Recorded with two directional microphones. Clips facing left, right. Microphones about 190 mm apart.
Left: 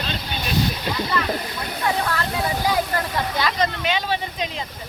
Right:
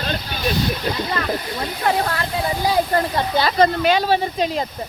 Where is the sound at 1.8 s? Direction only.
45° right (ahead or behind).